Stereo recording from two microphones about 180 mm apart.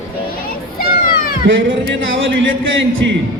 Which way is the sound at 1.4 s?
90° right.